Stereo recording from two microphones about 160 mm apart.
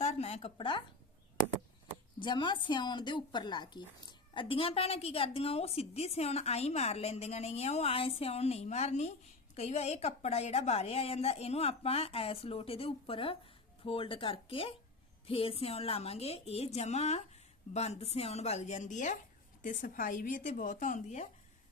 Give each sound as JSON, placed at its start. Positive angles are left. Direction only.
{"t": 0.0, "sound": "speech", "side_deg": 40}
{"t": 2.2, "sound": "speech", "side_deg": 30}